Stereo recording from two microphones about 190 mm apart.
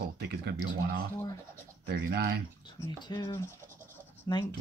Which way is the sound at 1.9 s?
55° right (ahead or behind).